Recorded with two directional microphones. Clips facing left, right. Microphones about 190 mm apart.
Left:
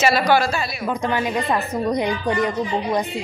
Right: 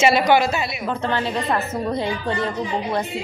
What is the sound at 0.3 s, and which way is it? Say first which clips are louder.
Speech: right 1 dB; 20° right (ahead or behind).